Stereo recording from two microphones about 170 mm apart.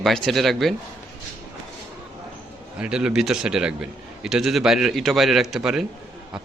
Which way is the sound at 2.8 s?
5° right (ahead or behind).